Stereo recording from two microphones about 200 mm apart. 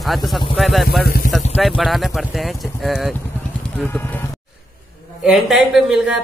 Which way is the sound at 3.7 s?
10° left (ahead or behind).